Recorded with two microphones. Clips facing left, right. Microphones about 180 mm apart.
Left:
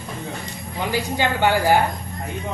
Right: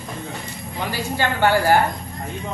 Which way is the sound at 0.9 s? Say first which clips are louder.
Left 2 dB; 15° left (ahead or behind).